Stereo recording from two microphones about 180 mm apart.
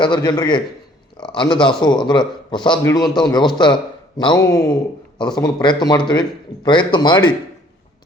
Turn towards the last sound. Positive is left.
turn(degrees=25)  # may be behind; listen again after turning